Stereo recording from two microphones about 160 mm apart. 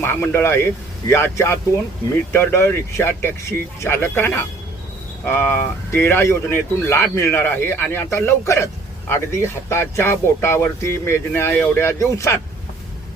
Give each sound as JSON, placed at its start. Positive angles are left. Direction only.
{"t": 0.0, "sound": "speech", "side_deg": 15}